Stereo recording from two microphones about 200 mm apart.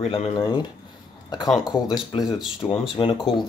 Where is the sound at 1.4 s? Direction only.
Centre (ahead or behind).